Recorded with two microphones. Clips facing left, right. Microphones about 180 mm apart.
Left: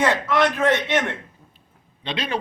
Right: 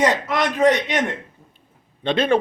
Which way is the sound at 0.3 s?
15° right (ahead or behind).